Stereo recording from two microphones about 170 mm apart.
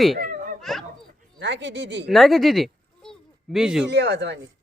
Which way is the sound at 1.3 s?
90° right.